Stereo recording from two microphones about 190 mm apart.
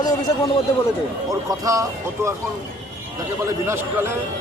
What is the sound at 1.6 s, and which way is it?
Speech, 15° right (ahead or behind).